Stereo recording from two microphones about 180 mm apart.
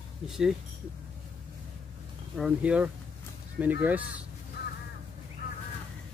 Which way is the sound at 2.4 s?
5° right (ahead or behind).